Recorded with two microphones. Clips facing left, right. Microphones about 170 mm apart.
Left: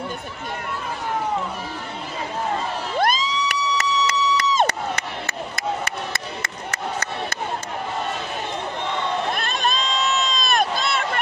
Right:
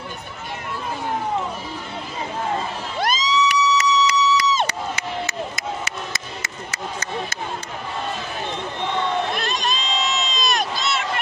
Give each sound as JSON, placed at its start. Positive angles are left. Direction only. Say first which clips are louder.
{"t": 3.0, "sound": "crowd", "louder": "right 1 dB", "side_deg": 55}
{"t": 9.3, "sound": "crowd", "louder": "left 1 dB", "side_deg": 50}